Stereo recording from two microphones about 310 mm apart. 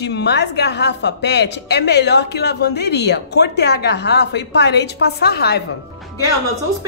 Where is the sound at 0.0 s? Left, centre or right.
Left.